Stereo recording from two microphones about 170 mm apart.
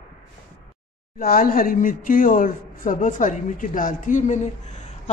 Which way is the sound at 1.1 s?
60° left (ahead or behind).